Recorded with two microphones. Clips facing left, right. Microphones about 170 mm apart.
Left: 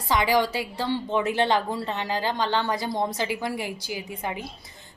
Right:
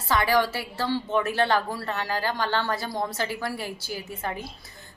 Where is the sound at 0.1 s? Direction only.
15° left (ahead or behind).